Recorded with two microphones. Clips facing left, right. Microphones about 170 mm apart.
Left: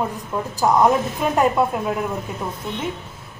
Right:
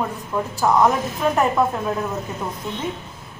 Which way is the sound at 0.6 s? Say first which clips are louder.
Left 1 dB; 15° left (ahead or behind).